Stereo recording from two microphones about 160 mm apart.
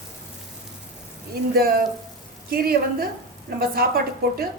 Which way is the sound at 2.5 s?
70° right (ahead or behind).